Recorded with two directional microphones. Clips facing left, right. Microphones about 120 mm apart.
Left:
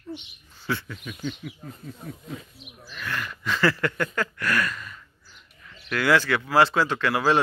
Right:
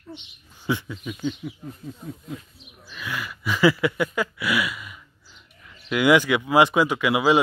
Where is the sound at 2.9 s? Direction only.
10° right (ahead or behind).